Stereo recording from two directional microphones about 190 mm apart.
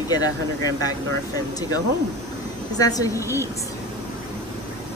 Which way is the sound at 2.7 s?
20° left (ahead or behind).